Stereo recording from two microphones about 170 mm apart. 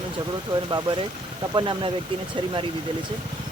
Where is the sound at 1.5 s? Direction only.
25° right (ahead or behind).